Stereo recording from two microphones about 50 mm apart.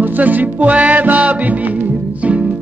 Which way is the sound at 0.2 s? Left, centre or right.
Right.